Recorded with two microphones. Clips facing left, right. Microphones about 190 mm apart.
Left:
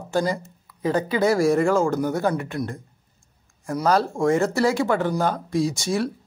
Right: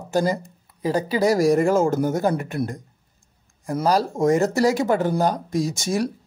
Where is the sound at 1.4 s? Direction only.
15° right (ahead or behind).